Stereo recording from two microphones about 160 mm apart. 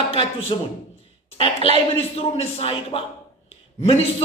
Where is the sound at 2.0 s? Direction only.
35° left (ahead or behind).